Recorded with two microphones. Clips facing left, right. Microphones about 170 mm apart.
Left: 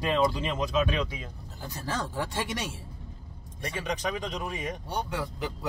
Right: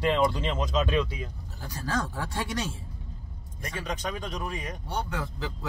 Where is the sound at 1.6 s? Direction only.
20° left (ahead or behind).